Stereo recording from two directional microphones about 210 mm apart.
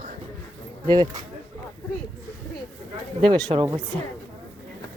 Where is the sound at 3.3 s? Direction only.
20° right (ahead or behind).